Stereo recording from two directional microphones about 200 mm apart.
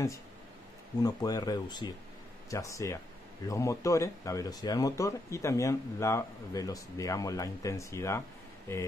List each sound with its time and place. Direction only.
1.0 s speech: 20° left (ahead or behind)